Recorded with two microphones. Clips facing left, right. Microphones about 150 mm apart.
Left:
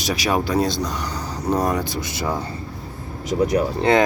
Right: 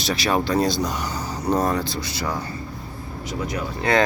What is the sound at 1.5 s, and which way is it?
Speech, 15° left (ahead or behind).